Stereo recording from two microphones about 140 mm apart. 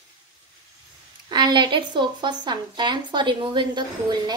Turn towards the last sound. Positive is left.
turn(degrees=-30)  # may be behind; listen again after turning